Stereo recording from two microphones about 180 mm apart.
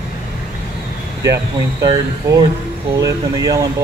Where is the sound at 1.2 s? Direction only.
20° right (ahead or behind).